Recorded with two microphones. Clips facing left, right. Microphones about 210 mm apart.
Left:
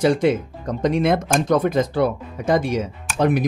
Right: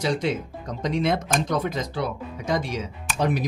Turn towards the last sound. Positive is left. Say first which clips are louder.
# left 5 dB
turn(degrees=55)  # may be behind; listen again after turning